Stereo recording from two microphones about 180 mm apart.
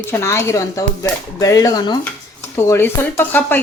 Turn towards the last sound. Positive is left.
turn(degrees=10)  # may be behind; listen again after turning